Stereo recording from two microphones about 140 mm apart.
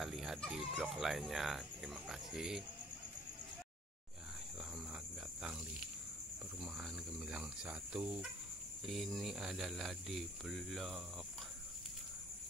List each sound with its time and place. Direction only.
0.0 s speech: centre (ahead or behind)
6.6 s speech: centre (ahead or behind)